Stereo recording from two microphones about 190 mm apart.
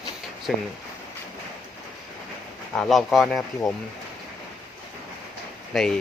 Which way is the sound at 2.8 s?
Centre (ahead or behind).